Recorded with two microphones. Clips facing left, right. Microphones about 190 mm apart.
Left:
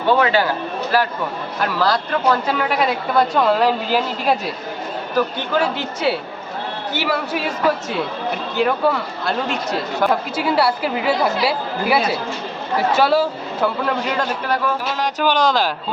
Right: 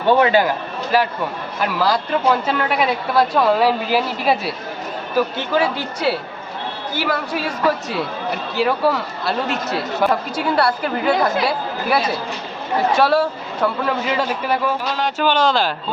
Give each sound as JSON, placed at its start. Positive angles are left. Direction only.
{"t": 0.1, "sound": "a man's voice", "side_deg": -20}
{"t": 2.5, "sound": "speech", "side_deg": 5}
{"t": 14.8, "sound": "speech", "side_deg": 10}